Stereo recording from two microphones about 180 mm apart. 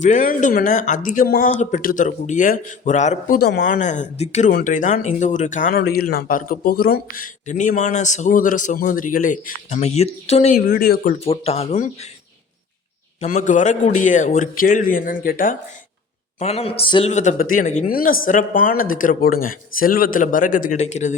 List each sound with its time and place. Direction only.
0.0 s speech: 45° left (ahead or behind)
3.8 s speech: 45° left (ahead or behind)
10.7 s speech: 55° left (ahead or behind)
11.2 s speech: 35° left (ahead or behind)
13.2 s speech: 45° left (ahead or behind)
16.4 s speech: 35° left (ahead or behind)